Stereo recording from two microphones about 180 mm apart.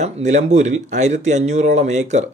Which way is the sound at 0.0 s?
40° right (ahead or behind).